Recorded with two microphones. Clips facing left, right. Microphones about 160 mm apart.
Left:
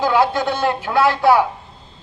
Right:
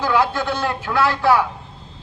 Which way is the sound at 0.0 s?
20° left (ahead or behind).